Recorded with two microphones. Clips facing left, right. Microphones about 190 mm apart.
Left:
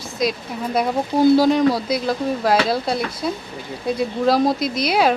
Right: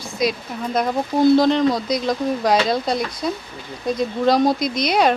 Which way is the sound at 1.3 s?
10° left (ahead or behind).